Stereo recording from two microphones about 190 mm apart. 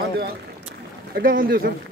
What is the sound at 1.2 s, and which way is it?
Speech, 50° right (ahead or behind).